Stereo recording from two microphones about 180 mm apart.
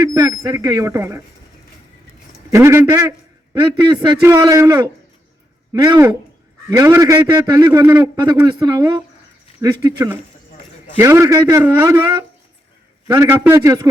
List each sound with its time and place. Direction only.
0.0 s a man's voice: 20° right (ahead or behind)
2.5 s a man's voice: 15° right (ahead or behind)